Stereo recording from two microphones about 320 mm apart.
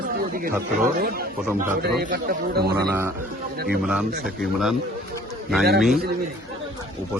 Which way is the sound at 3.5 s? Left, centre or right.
Right.